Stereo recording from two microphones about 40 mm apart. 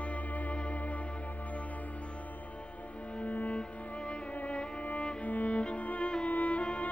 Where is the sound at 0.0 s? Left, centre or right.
Left.